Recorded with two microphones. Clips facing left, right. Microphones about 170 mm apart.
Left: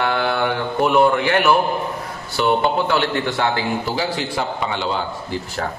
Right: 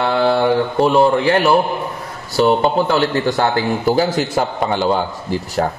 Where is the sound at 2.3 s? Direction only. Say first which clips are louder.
Right 4 dB; 40° right (ahead or behind).